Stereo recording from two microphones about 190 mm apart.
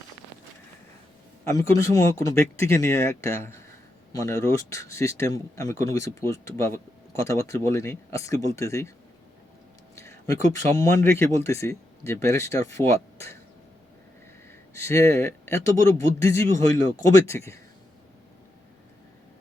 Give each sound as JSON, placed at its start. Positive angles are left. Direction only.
{"t": 1.5, "sound": "speech", "side_deg": 15}
{"t": 9.9, "sound": "speech", "side_deg": 15}
{"t": 14.8, "sound": "speech", "side_deg": 15}